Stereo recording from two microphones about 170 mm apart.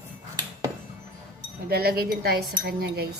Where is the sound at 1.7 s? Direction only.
65° right (ahead or behind).